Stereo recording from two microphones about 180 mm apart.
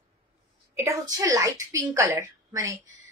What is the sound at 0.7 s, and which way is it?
A woman's voice, 20° right (ahead or behind).